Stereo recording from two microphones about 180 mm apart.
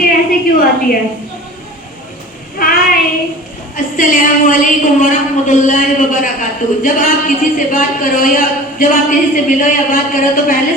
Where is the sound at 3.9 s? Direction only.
45° left (ahead or behind).